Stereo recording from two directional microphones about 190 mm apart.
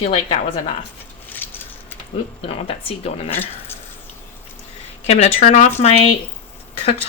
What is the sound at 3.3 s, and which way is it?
Speech, 10° left (ahead or behind).